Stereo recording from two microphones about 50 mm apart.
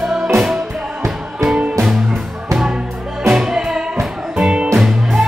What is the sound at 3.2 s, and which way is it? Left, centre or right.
Music, centre.